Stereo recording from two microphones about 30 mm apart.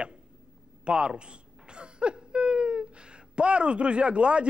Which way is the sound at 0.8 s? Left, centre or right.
Right.